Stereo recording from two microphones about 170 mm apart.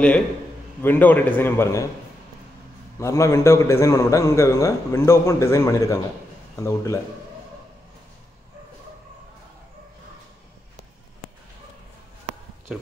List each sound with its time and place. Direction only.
0.8 s a man's voice: 10° left (ahead or behind)
3.0 s a man's voice: 15° left (ahead or behind)